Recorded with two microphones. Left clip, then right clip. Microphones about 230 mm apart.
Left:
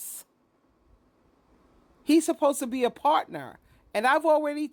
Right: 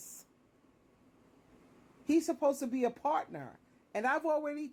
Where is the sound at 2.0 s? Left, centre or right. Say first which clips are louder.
Left 7 dB; left.